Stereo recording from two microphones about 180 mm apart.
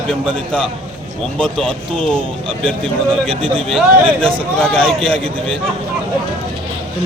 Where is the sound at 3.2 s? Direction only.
30° right (ahead or behind).